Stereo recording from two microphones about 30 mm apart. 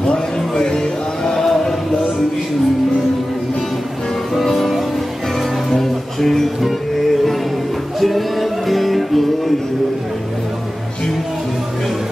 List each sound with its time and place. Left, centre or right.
0.1 s speech: left
1.3 s a sound: centre
4.4 s music: centre